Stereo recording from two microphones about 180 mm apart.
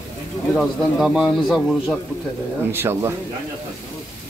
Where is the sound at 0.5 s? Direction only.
5° right (ahead or behind).